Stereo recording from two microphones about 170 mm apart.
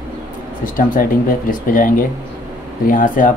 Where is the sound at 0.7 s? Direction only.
55° left (ahead or behind).